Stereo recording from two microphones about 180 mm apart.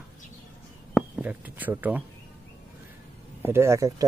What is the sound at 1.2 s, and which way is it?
Speech, 10° right (ahead or behind).